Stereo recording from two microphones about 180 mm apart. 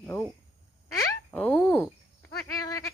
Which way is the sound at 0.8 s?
10° left (ahead or behind).